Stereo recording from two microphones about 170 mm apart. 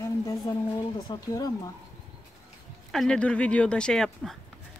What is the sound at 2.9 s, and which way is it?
Speech, 5° left (ahead or behind).